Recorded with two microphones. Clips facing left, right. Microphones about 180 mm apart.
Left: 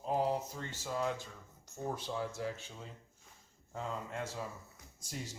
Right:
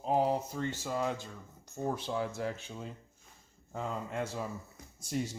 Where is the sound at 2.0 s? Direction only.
60° right (ahead or behind).